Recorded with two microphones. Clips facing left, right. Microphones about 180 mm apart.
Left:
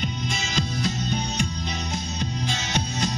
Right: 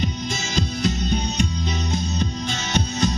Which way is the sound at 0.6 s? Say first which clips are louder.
Right 4 dB; 40° right (ahead or behind).